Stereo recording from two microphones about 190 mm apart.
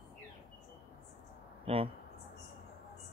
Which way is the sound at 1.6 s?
30° right (ahead or behind).